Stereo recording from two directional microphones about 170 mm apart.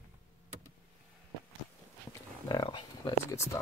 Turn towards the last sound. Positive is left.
turn(degrees=25)  # may be behind; listen again after turning